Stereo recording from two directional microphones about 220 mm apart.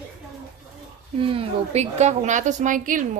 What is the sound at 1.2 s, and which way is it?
A woman's voice, 25° right (ahead or behind).